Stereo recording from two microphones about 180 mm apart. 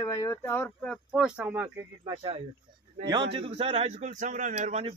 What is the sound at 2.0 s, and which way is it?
A man's voice, 30° right (ahead or behind).